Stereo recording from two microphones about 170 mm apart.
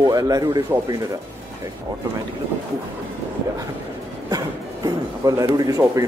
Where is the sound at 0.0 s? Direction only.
20° right (ahead or behind).